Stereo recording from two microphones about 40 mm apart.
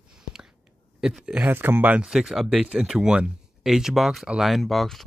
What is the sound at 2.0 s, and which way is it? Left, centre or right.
Speech, centre.